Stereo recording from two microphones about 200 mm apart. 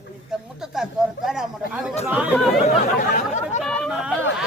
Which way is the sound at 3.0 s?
40° left (ahead or behind).